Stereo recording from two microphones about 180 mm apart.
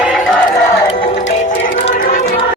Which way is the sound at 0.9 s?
40° left (ahead or behind).